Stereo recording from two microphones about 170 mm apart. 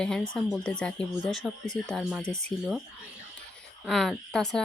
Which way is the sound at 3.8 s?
Centre (ahead or behind).